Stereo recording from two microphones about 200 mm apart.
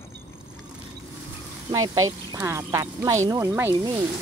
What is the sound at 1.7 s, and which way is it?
Speech, 15° right (ahead or behind).